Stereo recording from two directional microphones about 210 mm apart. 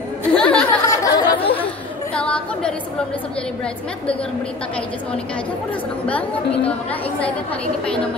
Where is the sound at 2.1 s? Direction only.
5° left (ahead or behind).